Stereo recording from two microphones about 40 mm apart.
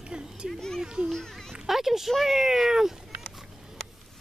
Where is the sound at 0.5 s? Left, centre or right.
Centre.